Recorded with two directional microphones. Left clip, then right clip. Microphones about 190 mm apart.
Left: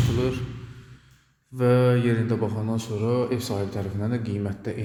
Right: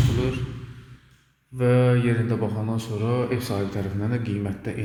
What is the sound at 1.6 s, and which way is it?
Mantra, 25° left (ahead or behind).